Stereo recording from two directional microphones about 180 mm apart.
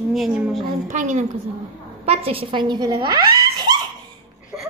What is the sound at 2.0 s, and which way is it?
A woman's voice, 35° right (ahead or behind).